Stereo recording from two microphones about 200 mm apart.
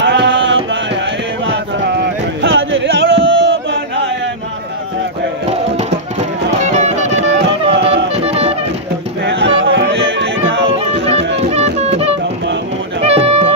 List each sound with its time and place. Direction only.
0.0 s music: 60° right (ahead or behind)
2.4 s a sound: 65° right (ahead or behind)
6.5 s music: 35° right (ahead or behind)
7.4 s music: 60° right (ahead or behind)
8.1 s music: 30° right (ahead or behind)
9.2 s music: 60° right (ahead or behind)
11.3 s music: 30° right (ahead or behind)